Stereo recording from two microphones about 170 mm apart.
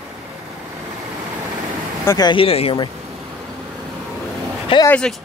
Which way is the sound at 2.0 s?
20° left (ahead or behind).